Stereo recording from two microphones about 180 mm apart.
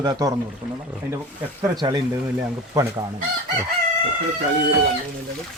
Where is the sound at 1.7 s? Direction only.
25° right (ahead or behind).